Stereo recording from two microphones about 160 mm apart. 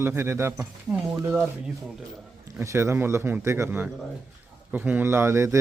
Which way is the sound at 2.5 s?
15° right (ahead or behind).